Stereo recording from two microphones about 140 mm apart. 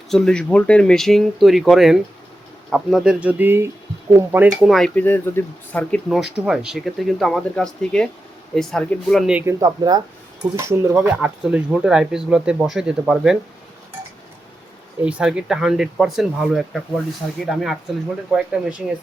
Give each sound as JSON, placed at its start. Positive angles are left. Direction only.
{"t": 0.1, "sound": "speech", "side_deg": 5}
{"t": 4.9, "sound": "speech", "side_deg": 15}
{"t": 5.9, "sound": "speech", "side_deg": -5}
{"t": 9.5, "sound": "speech", "side_deg": -25}
{"t": 15.0, "sound": "speech", "side_deg": -5}